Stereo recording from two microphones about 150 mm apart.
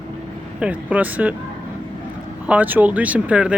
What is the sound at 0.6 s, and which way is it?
Speech, 10° right (ahead or behind).